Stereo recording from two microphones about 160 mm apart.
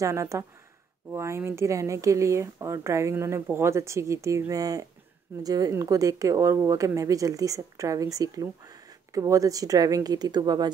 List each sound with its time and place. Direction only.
0.0 s speech: 20° right (ahead or behind)